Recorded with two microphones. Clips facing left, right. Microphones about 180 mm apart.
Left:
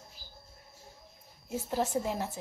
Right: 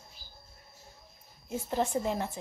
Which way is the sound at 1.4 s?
5° left (ahead or behind).